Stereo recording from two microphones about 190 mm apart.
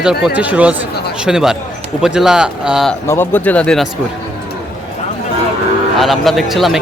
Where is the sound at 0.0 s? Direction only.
5° right (ahead or behind).